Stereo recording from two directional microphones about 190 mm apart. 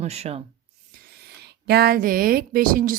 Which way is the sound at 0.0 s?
35° right (ahead or behind).